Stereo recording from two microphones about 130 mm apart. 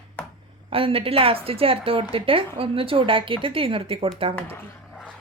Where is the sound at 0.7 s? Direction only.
45° right (ahead or behind).